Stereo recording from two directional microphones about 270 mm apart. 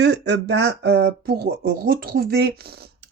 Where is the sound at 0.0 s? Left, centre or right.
Right.